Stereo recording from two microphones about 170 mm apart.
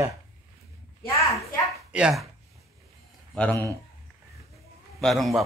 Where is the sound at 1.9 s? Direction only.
5° right (ahead or behind).